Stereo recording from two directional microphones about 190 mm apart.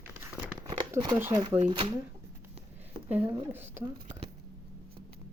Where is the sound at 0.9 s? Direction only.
20° right (ahead or behind).